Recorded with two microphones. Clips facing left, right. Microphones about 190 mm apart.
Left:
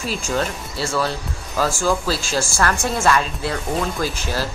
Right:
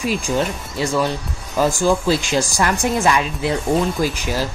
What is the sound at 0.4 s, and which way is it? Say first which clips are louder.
Speech: right 3 dB; 15° right (ahead or behind).